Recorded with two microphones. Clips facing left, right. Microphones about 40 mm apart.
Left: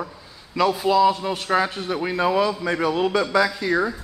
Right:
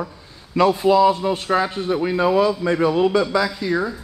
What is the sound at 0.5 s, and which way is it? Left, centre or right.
Speech, centre.